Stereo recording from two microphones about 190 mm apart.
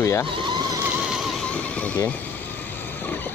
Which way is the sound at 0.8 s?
5° right (ahead or behind).